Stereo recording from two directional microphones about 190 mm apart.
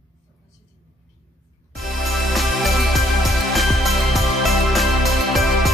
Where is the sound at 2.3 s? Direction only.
Centre (ahead or behind).